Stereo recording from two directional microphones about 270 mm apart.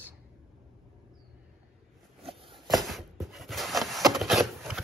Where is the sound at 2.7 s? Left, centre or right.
Centre.